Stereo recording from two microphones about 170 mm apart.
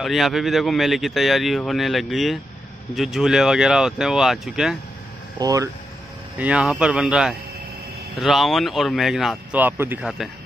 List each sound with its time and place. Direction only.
0.0 s speech: centre (ahead or behind)
5.4 s speech: 20° right (ahead or behind)
6.3 s speech: 10° right (ahead or behind)